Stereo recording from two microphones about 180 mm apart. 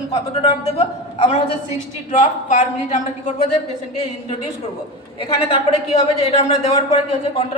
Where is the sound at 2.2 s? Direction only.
45° left (ahead or behind).